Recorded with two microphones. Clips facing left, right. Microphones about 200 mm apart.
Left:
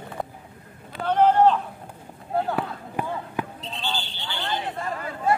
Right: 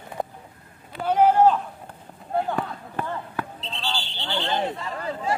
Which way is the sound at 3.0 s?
15° left (ahead or behind).